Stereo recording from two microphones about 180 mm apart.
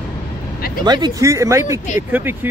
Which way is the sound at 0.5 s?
55° left (ahead or behind).